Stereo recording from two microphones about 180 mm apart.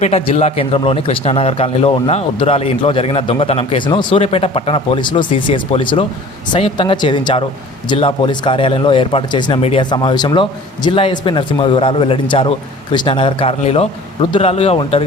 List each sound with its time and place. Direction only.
0.0 s a man's voice: 35° left (ahead or behind)